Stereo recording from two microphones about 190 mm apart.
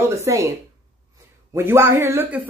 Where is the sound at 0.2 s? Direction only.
15° right (ahead or behind).